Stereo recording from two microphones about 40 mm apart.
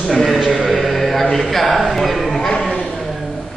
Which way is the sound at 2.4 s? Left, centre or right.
Centre.